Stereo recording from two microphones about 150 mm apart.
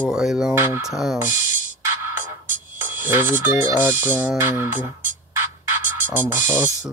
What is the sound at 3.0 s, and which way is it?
Speech, 15° right (ahead or behind).